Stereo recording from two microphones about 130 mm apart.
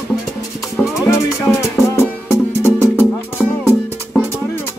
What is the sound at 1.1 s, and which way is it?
Music, 20° left (ahead or behind).